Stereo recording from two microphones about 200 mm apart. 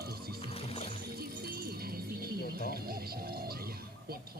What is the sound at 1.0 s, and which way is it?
Music, 50° right (ahead or behind).